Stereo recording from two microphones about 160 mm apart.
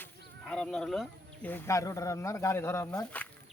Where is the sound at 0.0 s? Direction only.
5° left (ahead or behind).